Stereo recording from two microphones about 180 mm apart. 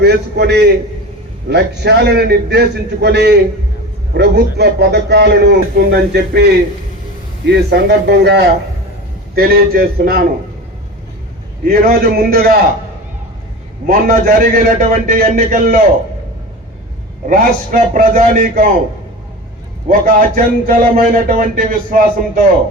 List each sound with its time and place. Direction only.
0.0 s a man's voice: 65° right (ahead or behind)
11.6 s a man's voice: 55° right (ahead or behind)
13.8 s speech: 50° right (ahead or behind)
17.2 s speech: 50° right (ahead or behind)
19.9 s speech: 50° right (ahead or behind)